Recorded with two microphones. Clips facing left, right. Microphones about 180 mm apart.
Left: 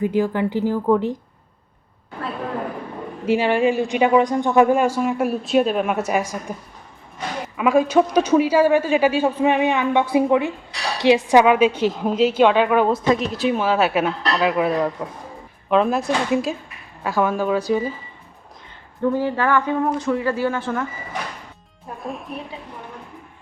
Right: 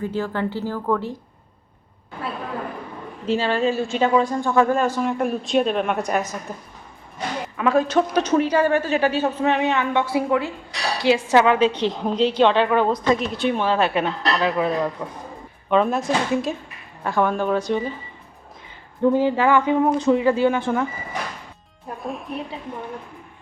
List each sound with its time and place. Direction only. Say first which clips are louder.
0.0 s a woman's voice: left 5 dB; 15° left (ahead or behind)
3.2 s a woman's voice: left 3 dB; 15° left (ahead or behind)
19.1 s speech: right 2 dB; 15° right (ahead or behind)
22.0 s speech: right 1 dB; centre (ahead or behind)